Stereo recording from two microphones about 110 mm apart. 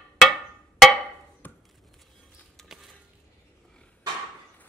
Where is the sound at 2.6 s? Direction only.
5° left (ahead or behind).